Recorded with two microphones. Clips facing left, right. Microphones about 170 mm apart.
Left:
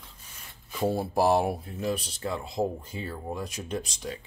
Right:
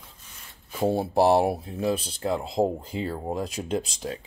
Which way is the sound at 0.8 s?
25° right (ahead or behind).